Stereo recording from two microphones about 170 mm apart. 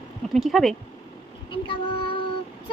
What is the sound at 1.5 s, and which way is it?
Child singing, 30° left (ahead or behind).